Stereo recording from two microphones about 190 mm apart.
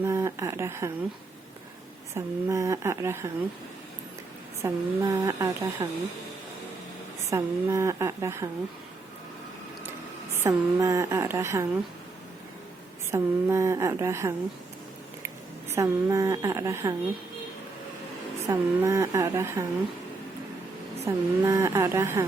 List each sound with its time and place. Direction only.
0.0 s speech: 15° right (ahead or behind)
2.1 s speech: 15° right (ahead or behind)
4.6 s speech: 15° right (ahead or behind)
7.3 s speech: 15° right (ahead or behind)
10.3 s speech: 15° right (ahead or behind)
13.1 s speech: 15° right (ahead or behind)
15.7 s speech: 15° right (ahead or behind)
18.4 s speech: 15° right (ahead or behind)
21.0 s speech: 15° right (ahead or behind)